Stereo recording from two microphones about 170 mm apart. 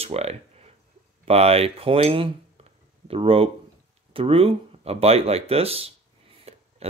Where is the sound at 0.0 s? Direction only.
35° right (ahead or behind).